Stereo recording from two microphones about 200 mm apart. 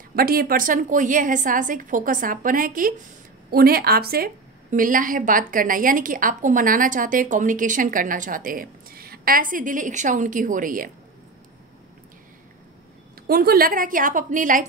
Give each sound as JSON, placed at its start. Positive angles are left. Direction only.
{"t": 0.1, "sound": "a woman's voice", "side_deg": -50}
{"t": 13.3, "sound": "a woman's voice", "side_deg": -50}